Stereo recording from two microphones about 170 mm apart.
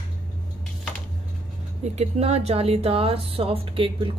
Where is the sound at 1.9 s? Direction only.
40° right (ahead or behind).